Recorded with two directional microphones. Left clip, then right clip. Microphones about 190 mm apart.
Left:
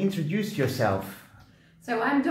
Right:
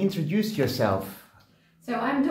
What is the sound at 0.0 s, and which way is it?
Speech, 5° right (ahead or behind).